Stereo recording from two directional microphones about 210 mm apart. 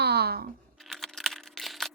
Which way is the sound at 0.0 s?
50° right (ahead or behind).